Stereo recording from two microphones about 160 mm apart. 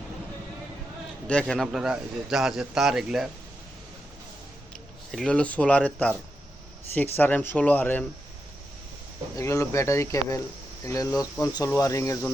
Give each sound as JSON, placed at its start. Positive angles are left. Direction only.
{"t": 1.3, "sound": "a man's voice", "side_deg": 5}
{"t": 5.1, "sound": "speech", "side_deg": 5}
{"t": 9.3, "sound": "speech", "side_deg": 20}